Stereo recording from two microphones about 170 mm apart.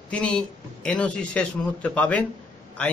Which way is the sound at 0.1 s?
5° left (ahead or behind).